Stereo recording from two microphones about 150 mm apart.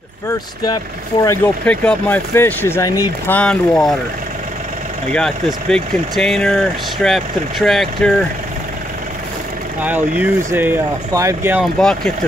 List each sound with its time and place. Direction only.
1.1 s speech: 35° left (ahead or behind)
1.6 s speech: 10° left (ahead or behind)
5.1 s speech: 5° left (ahead or behind)
9.8 s speech: 10° right (ahead or behind)
11.6 s speech: 5° left (ahead or behind)